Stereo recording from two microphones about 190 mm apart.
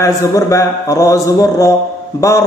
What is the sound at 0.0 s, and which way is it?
Mantra, 15° left (ahead or behind).